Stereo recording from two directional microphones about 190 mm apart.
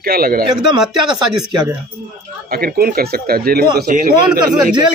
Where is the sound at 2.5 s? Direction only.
55° right (ahead or behind).